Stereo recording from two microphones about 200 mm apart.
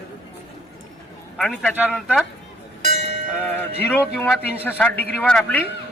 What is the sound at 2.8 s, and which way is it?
Train, 35° right (ahead or behind).